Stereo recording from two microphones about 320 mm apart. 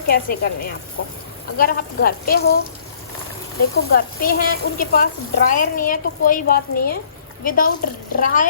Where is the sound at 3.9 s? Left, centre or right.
Left.